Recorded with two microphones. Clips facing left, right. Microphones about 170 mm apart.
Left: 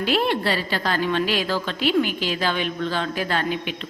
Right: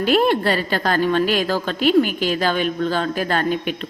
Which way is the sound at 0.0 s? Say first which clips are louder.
Right 5 dB; 45° right (ahead or behind).